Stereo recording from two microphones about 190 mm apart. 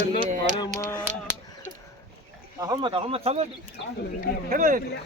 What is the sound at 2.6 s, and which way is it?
Speech, 20° right (ahead or behind).